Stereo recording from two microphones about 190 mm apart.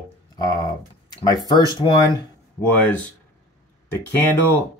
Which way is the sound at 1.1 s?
20° left (ahead or behind).